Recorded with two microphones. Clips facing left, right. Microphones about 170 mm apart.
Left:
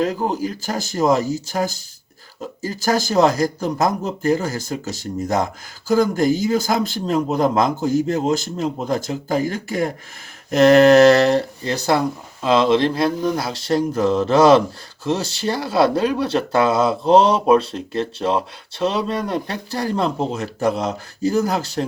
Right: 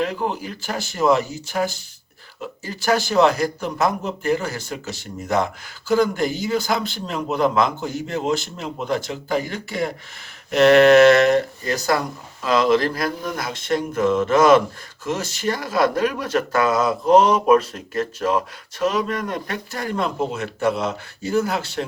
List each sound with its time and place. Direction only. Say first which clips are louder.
0.0 s speech: left 3 dB; 40° left (ahead or behind)